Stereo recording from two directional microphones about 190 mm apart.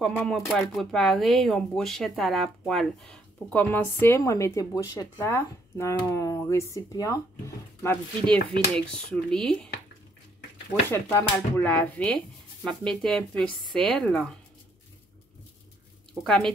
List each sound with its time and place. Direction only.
0.0 s speech: 5° left (ahead or behind)
10.7 s speech: 10° left (ahead or behind)
16.3 s speech: 5° left (ahead or behind)